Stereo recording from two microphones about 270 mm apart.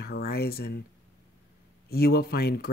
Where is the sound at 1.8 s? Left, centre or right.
Left.